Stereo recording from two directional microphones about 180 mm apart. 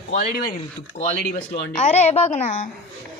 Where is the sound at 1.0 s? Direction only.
35° left (ahead or behind).